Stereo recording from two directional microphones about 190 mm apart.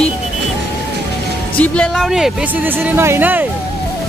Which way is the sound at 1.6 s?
5° left (ahead or behind).